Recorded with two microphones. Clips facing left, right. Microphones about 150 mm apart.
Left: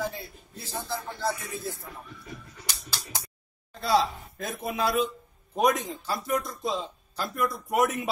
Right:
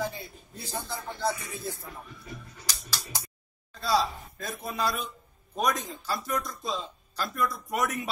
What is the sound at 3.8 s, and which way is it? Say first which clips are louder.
Speech: left 2 dB; 55° left (ahead or behind).